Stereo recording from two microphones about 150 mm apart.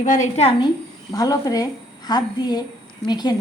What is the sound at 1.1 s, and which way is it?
A woman's voice, 25° left (ahead or behind).